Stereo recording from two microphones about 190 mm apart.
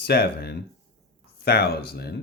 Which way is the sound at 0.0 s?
60° left (ahead or behind).